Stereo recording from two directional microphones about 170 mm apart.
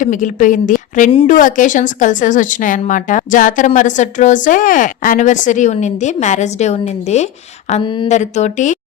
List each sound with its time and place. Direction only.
0.0 s speech: 50° left (ahead or behind)
7.8 s speech: 30° left (ahead or behind)
8.0 s speech: 45° left (ahead or behind)